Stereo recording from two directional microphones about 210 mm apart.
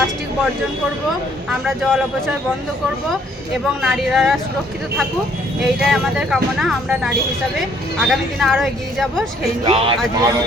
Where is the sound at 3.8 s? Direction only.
Centre (ahead or behind).